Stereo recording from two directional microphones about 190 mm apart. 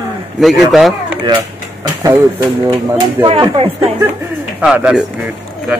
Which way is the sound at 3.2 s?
25° right (ahead or behind).